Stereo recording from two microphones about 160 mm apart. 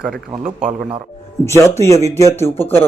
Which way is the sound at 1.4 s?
15° left (ahead or behind).